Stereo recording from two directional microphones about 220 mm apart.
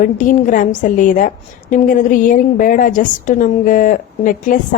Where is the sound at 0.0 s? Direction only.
35° left (ahead or behind).